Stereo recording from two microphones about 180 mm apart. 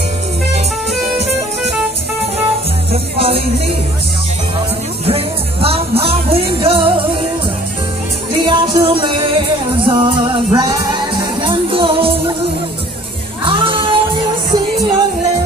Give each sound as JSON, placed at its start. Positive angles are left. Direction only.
{"t": 3.2, "sound": "music", "side_deg": -35}
{"t": 5.0, "sound": "music", "side_deg": -35}
{"t": 8.3, "sound": "music", "side_deg": -25}
{"t": 13.4, "sound": "music", "side_deg": -30}